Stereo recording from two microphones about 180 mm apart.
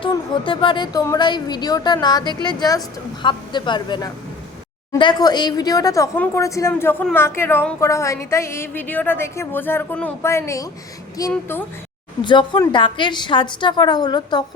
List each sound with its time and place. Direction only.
0.0 s a woman's voice: 30° left (ahead or behind); by 11.6 s 15° left (ahead or behind)
12.2 s a woman's voice: 25° left (ahead or behind)